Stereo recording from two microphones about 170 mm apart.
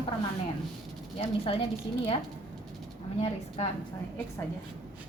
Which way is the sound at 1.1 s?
35° left (ahead or behind).